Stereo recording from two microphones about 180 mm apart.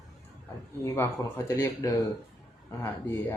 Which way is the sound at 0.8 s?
15° left (ahead or behind).